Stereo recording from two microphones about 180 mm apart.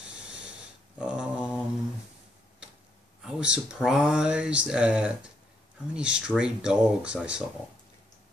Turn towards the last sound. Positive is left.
turn(degrees=-5)  # may be behind; listen again after turning